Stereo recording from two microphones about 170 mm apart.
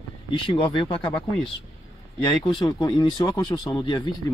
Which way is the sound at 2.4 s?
30° left (ahead or behind).